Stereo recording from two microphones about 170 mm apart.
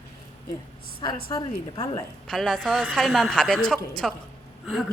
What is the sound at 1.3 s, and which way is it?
Speech, 20° left (ahead or behind).